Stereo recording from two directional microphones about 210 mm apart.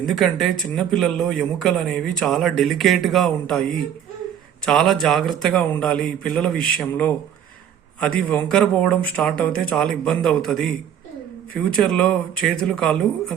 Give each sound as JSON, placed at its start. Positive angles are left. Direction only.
{"t": 0.0, "sound": "speech", "side_deg": 0}